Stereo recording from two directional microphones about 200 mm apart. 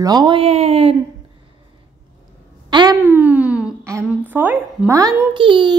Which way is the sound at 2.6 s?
20° right (ahead or behind).